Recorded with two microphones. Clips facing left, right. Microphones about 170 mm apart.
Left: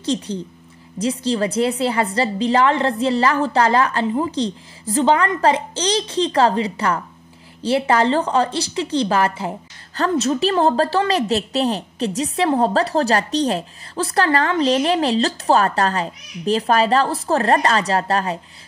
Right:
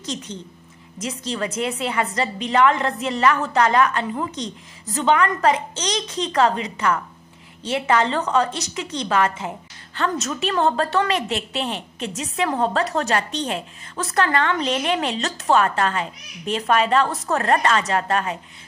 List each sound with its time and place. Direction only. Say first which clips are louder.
0.0 s a woman's voice: left 8 dB; 30° left (ahead or behind)